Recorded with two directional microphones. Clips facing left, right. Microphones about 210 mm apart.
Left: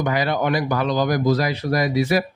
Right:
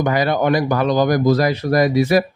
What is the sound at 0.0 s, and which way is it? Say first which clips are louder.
A man's voice: right 4 dB; 45° right (ahead or behind).